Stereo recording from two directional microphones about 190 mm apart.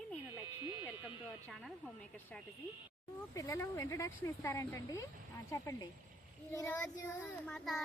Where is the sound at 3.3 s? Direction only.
15° left (ahead or behind).